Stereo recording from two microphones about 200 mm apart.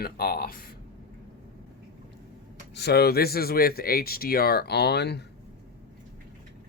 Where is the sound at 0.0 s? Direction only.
50° left (ahead or behind).